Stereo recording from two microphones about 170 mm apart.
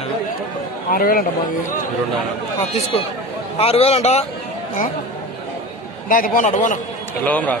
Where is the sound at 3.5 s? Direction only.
35° left (ahead or behind).